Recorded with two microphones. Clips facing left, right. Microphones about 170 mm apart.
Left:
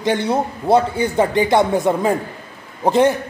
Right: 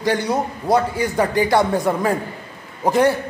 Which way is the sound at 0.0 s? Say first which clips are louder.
Left 2 dB; 25° left (ahead or behind).